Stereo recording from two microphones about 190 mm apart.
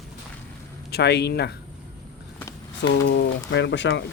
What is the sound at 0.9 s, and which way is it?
Speech, 60° left (ahead or behind).